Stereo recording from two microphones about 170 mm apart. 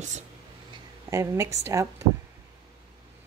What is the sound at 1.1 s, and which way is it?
Speech, 15° right (ahead or behind).